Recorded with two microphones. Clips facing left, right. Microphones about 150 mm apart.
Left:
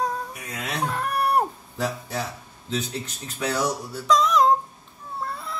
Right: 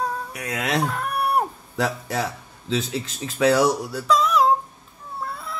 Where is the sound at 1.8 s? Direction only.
90° right.